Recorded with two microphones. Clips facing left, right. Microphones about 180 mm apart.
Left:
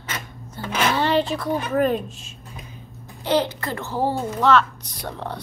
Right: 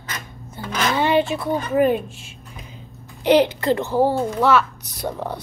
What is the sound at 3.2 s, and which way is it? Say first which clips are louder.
Speech: right 6 dB; 15° right (ahead or behind).